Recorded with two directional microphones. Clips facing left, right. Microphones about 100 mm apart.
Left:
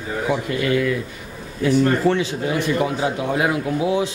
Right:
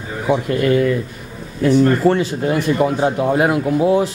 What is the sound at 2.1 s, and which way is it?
Speech, 40° right (ahead or behind).